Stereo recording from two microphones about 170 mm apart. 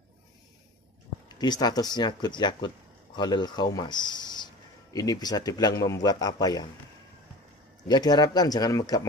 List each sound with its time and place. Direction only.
1.4 s a man's voice: 25° left (ahead or behind)
7.9 s a man's voice: 25° left (ahead or behind)